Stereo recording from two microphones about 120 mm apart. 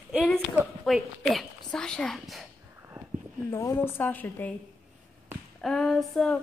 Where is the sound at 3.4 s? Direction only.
20° left (ahead or behind).